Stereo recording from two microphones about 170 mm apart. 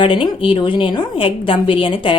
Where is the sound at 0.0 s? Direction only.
30° left (ahead or behind).